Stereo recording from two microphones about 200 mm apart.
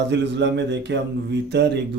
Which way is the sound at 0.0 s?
60° right (ahead or behind).